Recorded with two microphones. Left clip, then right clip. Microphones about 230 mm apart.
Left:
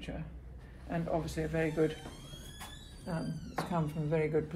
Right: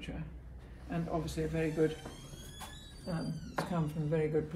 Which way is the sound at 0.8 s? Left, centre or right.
Left.